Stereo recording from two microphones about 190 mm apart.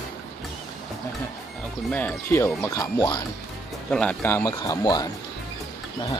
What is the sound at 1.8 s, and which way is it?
Speech, 10° left (ahead or behind).